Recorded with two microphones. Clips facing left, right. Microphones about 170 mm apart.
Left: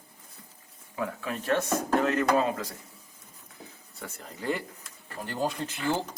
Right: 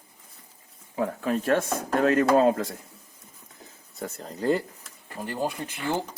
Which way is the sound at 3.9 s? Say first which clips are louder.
Right 7 dB; 40° right (ahead or behind).